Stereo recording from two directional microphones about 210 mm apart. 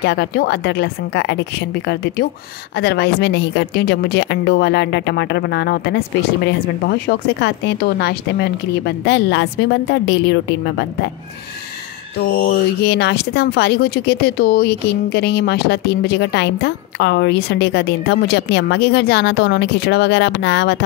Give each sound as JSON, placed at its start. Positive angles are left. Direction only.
{"t": 0.0, "sound": "speech", "side_deg": 50}
{"t": 12.2, "sound": "speech", "side_deg": 50}